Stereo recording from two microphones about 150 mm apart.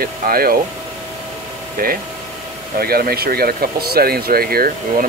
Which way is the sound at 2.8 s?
90° right.